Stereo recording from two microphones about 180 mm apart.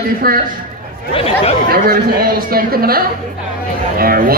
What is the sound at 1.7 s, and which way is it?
A man's voice, 55° right (ahead or behind).